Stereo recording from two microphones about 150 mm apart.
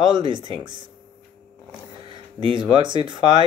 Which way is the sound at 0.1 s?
30° right (ahead or behind).